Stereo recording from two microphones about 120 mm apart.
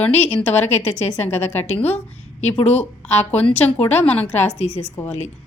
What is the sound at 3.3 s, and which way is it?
Speech, 15° left (ahead or behind).